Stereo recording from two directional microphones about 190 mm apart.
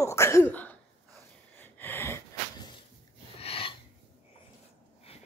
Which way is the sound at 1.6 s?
10° left (ahead or behind).